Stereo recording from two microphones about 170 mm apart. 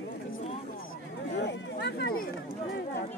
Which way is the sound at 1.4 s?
80° left.